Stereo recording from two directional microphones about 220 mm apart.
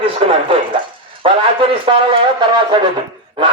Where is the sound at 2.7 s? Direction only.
20° right (ahead or behind).